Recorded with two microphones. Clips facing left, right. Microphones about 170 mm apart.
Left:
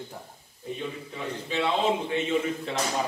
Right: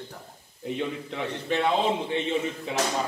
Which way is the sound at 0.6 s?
70° right (ahead or behind).